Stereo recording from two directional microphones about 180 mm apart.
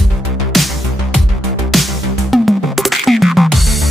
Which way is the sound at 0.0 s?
Centre (ahead or behind).